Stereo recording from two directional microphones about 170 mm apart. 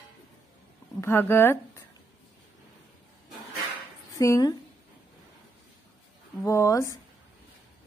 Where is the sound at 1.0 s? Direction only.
15° left (ahead or behind).